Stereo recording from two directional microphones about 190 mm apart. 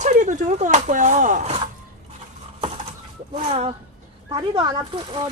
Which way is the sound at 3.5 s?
30° right (ahead or behind).